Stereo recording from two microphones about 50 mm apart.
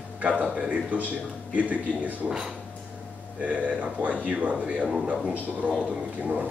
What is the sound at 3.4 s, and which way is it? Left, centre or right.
Speech, right.